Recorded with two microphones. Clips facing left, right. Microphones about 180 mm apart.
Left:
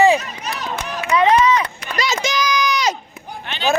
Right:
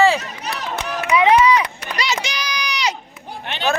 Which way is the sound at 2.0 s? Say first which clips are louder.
Left 4 dB; 45° left (ahead or behind).